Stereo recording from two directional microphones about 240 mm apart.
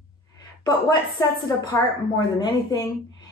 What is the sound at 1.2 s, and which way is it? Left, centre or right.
Speech, centre.